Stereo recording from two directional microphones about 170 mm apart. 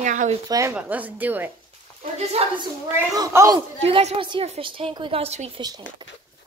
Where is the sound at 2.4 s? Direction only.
35° right (ahead or behind).